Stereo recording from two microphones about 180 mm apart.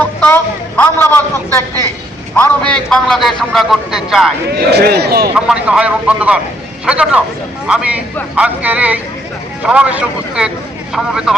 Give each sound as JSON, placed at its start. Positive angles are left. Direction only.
{"t": 0.8, "sound": "a man's voice", "side_deg": 10}
{"t": 4.4, "sound": "speech", "side_deg": -65}
{"t": 5.3, "sound": "a man's voice", "side_deg": -5}